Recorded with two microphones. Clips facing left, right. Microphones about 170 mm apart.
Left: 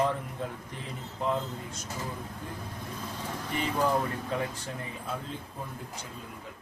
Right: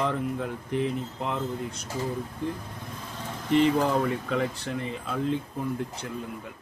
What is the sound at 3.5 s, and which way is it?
Speech, 75° right (ahead or behind).